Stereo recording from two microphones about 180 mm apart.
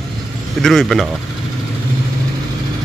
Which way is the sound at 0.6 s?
Centre (ahead or behind).